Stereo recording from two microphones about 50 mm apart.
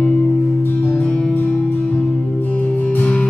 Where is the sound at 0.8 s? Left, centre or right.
Left.